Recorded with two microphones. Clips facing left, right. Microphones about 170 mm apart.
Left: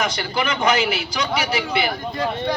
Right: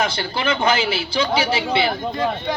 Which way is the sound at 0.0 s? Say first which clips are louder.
Right 1 dB; 30° right (ahead or behind).